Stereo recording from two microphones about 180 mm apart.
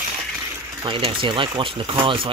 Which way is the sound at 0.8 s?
30° right (ahead or behind).